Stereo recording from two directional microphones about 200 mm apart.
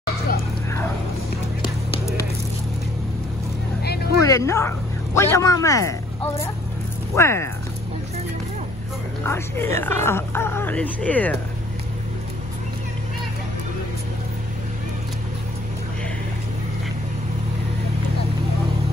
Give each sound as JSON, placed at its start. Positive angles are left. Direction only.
{"t": 3.8, "sound": "vehicle", "side_deg": 55}
{"t": 4.2, "sound": "speech", "side_deg": 15}
{"t": 9.2, "sound": "speech", "side_deg": 10}